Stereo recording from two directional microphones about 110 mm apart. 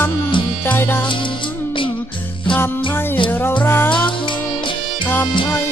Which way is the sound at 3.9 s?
50° left (ahead or behind).